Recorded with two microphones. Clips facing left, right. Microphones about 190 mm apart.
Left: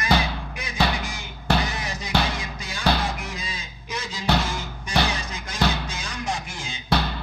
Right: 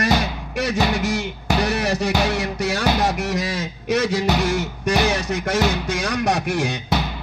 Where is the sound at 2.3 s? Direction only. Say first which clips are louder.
Right 11 dB; 75° right (ahead or behind).